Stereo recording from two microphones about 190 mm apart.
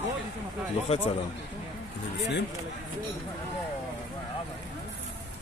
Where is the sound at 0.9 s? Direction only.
35° left (ahead or behind).